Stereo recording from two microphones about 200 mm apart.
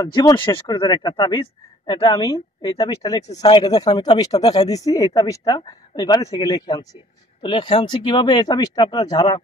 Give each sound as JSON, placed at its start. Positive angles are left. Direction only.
{"t": 0.0, "sound": "speech", "side_deg": 20}